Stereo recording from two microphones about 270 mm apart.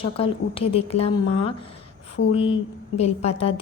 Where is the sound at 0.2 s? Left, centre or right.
Left.